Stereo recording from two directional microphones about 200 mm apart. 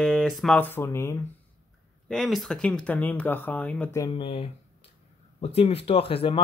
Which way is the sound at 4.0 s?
25° left (ahead or behind).